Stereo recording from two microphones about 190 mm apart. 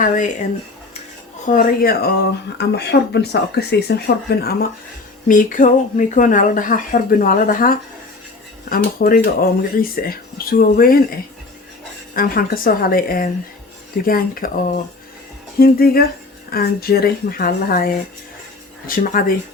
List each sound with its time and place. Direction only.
0.0 s speech: 40° left (ahead or behind)
1.5 s speech: 45° left (ahead or behind)
5.3 s speech: 45° left (ahead or behind)
12.1 s speech: 50° left (ahead or behind)